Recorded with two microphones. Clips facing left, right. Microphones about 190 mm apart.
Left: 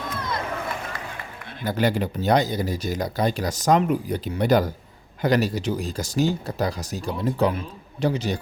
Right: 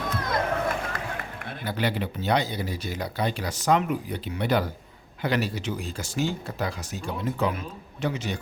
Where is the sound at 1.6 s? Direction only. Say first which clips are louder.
Left 5 dB; 45° left (ahead or behind).